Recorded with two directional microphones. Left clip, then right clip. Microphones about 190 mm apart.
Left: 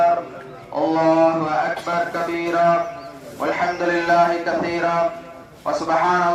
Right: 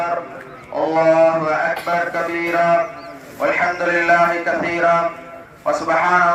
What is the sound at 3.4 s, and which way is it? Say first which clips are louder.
A man's voice: right 3 dB; 45° right (ahead or behind).